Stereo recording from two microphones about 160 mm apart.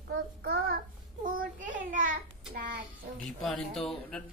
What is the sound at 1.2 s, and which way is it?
Child singing, 55° right (ahead or behind).